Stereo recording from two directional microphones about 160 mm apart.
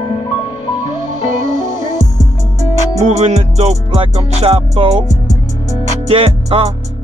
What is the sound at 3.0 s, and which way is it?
Music, 45° right (ahead or behind).